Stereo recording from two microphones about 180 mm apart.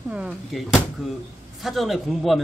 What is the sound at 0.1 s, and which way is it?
Speech, 5° right (ahead or behind).